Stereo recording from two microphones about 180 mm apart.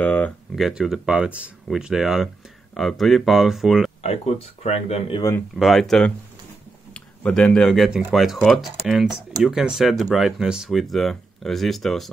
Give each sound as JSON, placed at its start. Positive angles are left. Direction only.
{"t": 0.0, "sound": "a sound", "side_deg": 5}
{"t": 0.7, "sound": "speech", "side_deg": 0}
{"t": 4.0, "sound": "speech", "side_deg": 35}
{"t": 5.6, "sound": "speech", "side_deg": 0}